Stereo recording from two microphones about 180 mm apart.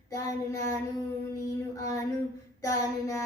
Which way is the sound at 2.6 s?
20° left (ahead or behind).